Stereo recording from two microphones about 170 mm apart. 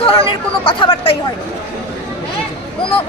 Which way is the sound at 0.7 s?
30° left (ahead or behind).